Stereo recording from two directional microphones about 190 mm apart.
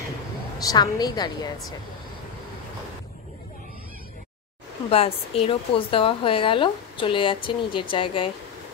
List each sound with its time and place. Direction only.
0.6 s a woman's voice: 20° left (ahead or behind)
4.9 s a woman's voice: 30° left (ahead or behind)